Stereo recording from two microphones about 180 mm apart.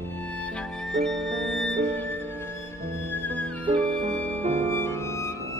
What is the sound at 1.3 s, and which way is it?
Music, 85° right.